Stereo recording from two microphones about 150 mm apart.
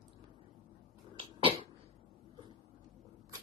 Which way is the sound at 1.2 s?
40° right (ahead or behind).